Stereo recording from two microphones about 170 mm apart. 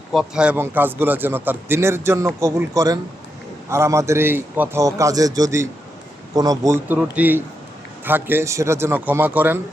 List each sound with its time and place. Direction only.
0.1 s a man's voice: 5° right (ahead or behind)